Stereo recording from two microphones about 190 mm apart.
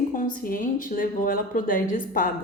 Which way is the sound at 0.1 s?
45° left (ahead or behind).